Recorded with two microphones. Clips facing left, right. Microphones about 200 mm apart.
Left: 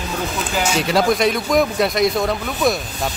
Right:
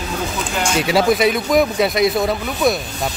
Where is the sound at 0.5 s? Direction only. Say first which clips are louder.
Right 1 dB; centre (ahead or behind).